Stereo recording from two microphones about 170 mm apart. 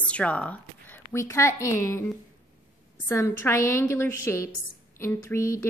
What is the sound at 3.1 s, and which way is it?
A woman's voice, 15° left (ahead or behind).